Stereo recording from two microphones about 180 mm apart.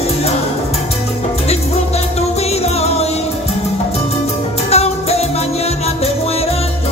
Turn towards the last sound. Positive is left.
turn(degrees=35)  # may be behind; listen again after turning